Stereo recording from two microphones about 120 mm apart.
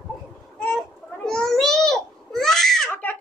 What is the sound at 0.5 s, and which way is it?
Babbling, 5° left (ahead or behind).